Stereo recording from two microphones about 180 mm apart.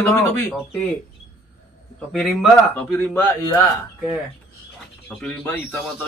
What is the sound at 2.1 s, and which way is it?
A man's voice, centre (ahead or behind).